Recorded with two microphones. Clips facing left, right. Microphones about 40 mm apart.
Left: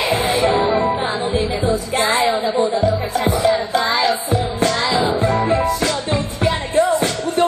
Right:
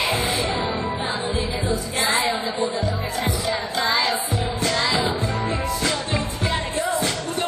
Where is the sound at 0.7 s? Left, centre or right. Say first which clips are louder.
Left 9 dB; left.